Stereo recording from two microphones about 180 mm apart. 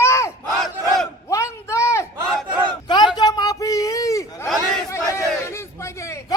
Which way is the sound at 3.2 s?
20° left (ahead or behind).